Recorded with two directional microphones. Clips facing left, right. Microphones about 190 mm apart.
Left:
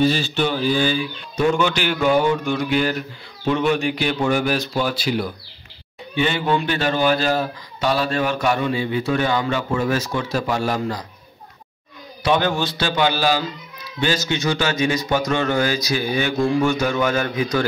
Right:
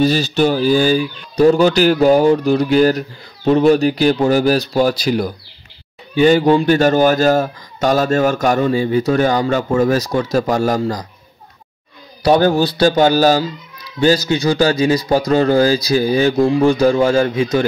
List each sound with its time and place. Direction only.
0.0 s speech: 40° right (ahead or behind)
12.2 s speech: 40° right (ahead or behind)